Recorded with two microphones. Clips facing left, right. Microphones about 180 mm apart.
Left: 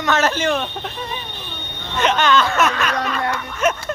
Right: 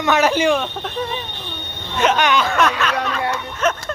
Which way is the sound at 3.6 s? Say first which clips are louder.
Left 1 dB; 10° left (ahead or behind).